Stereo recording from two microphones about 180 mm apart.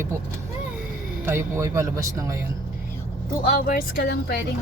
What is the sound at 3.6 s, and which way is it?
Speech, 60° left (ahead or behind).